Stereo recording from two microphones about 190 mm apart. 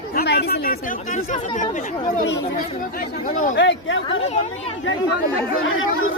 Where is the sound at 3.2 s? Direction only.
45° left (ahead or behind).